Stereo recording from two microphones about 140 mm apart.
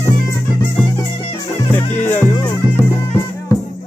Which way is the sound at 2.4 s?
25° left (ahead or behind).